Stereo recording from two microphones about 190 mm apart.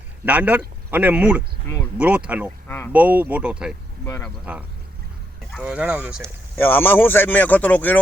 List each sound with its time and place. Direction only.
0.3 s speech: 10° right (ahead or behind)
2.6 s speech: 10° left (ahead or behind)
2.9 s speech: 10° right (ahead or behind)
4.0 s speech: 15° left (ahead or behind)
4.5 s speech: 5° right (ahead or behind)
5.6 s speech: 5° right (ahead or behind)
6.6 s speech: 10° left (ahead or behind)